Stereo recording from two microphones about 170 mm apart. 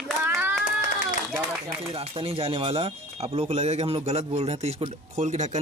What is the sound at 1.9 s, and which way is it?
Speech, 30° right (ahead or behind).